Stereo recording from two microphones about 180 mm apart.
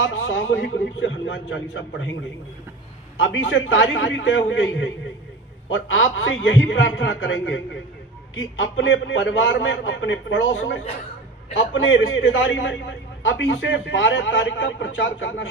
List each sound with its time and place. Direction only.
0.0 s a man's voice: 90° left
3.2 s a man's voice: 90° left